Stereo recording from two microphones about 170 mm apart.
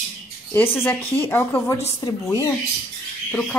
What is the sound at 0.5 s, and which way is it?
Speech, 10° left (ahead or behind).